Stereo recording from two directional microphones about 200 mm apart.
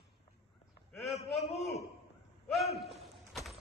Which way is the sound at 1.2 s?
Centre (ahead or behind).